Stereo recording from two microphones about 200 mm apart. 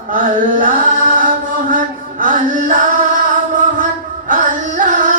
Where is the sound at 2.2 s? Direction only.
40° right (ahead or behind).